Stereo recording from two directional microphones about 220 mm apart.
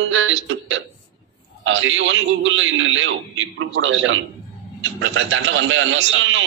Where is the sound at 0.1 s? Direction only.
60° right (ahead or behind).